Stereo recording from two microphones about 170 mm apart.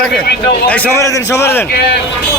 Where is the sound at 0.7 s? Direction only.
10° left (ahead or behind).